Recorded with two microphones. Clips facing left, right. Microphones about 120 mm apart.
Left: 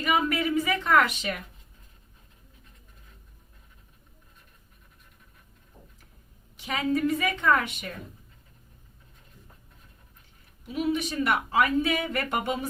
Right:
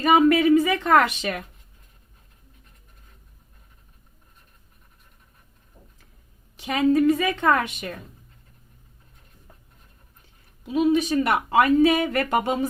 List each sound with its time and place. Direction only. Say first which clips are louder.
0.0 s a sound: right 9 dB; 80° right
6.6 s a woman's voice: right 7 dB; 80° right
10.7 s speech: right 8 dB; 90° right